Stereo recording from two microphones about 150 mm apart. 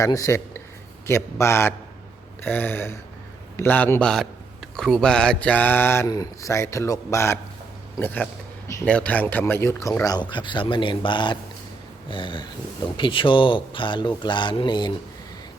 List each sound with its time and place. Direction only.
0.0 s speech: 20° left (ahead or behind)
4.0 s a man's voice: centre (ahead or behind); by 14.9 s 30° left (ahead or behind)